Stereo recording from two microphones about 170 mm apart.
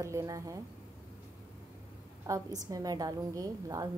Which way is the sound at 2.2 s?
20° right (ahead or behind).